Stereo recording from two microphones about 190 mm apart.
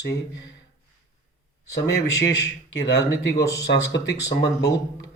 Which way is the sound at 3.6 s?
60° left (ahead or behind).